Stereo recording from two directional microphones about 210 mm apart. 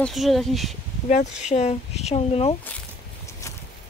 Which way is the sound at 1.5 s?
30° left (ahead or behind).